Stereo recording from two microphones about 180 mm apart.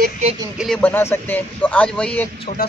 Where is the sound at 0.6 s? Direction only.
5° left (ahead or behind).